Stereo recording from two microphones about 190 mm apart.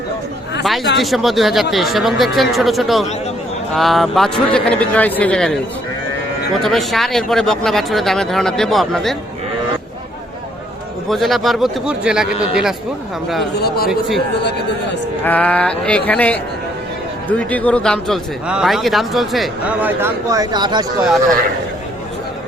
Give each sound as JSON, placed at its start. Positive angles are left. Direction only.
{"t": 1.0, "sound": "speech", "side_deg": 0}
{"t": 6.6, "sound": "speech", "side_deg": 0}
{"t": 11.1, "sound": "speech", "side_deg": 0}
{"t": 13.4, "sound": "speech", "side_deg": 55}
{"t": 15.2, "sound": "speech", "side_deg": 10}
{"t": 20.0, "sound": "speech", "side_deg": -20}
{"t": 21.0, "sound": "speech", "side_deg": 0}